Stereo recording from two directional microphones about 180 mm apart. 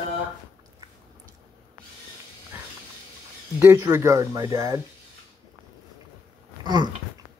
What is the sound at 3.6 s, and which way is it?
Speech, 15° right (ahead or behind).